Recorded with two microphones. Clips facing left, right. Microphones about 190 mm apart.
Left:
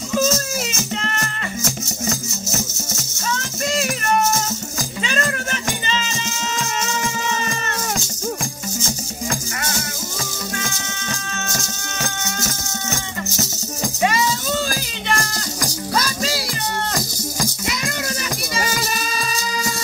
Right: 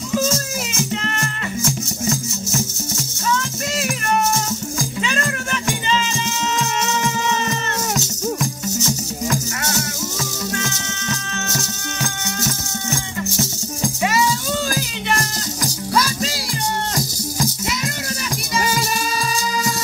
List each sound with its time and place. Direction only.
11.1 s music: 30° left (ahead or behind)
15.6 s music: 50° left (ahead or behind)
16.9 s music: 75° left (ahead or behind)